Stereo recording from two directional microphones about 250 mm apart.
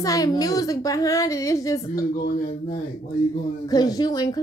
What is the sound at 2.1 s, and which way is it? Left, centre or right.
Speech, left.